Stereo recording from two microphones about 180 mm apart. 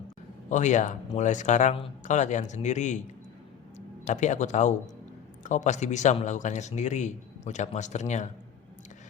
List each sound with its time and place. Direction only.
0.5 s speech: 40° left (ahead or behind)